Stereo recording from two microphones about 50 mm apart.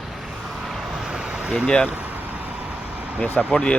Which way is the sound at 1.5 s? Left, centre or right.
Centre.